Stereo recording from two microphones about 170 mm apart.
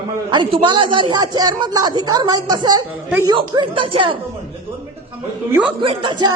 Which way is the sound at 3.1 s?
15° right (ahead or behind).